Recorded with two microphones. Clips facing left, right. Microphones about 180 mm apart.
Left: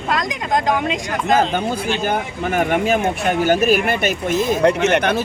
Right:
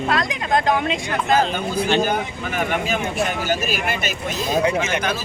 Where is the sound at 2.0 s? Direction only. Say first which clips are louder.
Left 1 dB; 50° left (ahead or behind).